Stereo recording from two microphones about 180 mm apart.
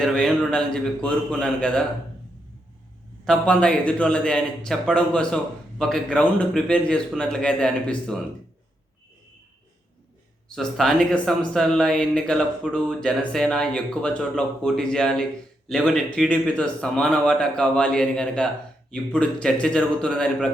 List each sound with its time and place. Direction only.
0.0 s speech: 5° left (ahead or behind)
3.2 s speech: 5° left (ahead or behind)
10.5 s speech: centre (ahead or behind)